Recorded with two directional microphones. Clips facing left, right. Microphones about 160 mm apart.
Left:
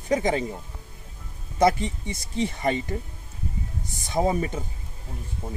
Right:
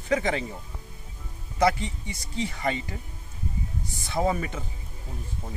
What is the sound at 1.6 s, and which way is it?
Speech, 20° left (ahead or behind).